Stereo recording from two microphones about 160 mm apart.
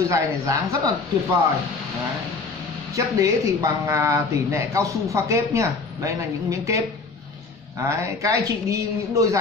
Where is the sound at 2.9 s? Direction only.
20° right (ahead or behind).